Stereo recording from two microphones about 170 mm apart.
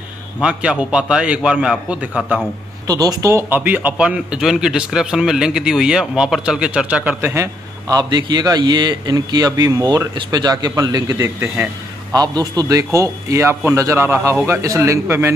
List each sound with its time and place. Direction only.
0.4 s a man's voice: 5° right (ahead or behind)
2.9 s a man's voice: 20° right (ahead or behind)
12.1 s a man's voice: 25° right (ahead or behind)